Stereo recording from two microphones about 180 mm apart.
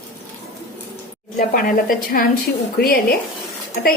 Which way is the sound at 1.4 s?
50° left (ahead or behind).